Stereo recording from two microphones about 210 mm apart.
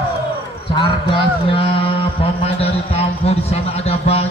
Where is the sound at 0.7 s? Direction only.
20° left (ahead or behind).